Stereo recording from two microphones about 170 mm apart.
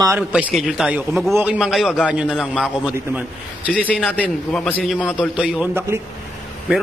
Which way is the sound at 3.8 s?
5° left (ahead or behind).